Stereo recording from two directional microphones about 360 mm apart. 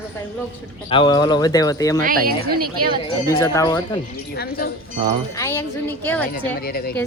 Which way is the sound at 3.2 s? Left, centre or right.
Centre.